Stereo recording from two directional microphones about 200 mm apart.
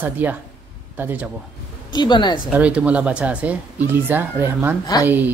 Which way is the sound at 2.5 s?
5° right (ahead or behind).